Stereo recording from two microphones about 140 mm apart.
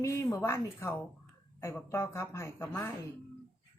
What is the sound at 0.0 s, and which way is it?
A woman's voice, 20° left (ahead or behind).